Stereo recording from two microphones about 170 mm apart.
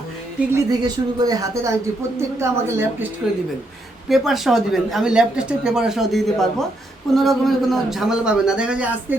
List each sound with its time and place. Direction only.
0.5 s a woman's voice: 25° right (ahead or behind)
4.1 s speech: centre (ahead or behind)